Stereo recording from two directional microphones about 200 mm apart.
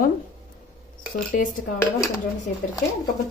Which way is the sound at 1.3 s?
45° left (ahead or behind).